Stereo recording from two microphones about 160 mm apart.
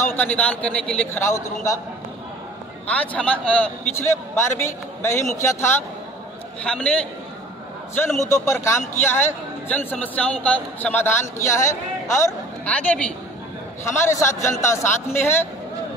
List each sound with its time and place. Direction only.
0.0 s a man's voice: 10° left (ahead or behind)
1.2 s a man's voice: 20° left (ahead or behind)
2.9 s a man's voice: 10° left (ahead or behind)
8.3 s a man's voice: 15° left (ahead or behind)